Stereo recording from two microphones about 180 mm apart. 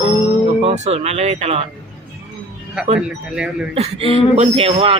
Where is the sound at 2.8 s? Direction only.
5° right (ahead or behind).